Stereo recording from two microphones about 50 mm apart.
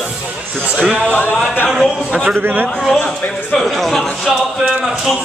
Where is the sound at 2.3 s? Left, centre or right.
Right.